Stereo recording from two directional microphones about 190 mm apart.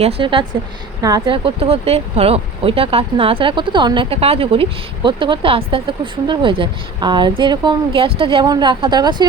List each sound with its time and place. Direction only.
0.0 s speech: 30° right (ahead or behind)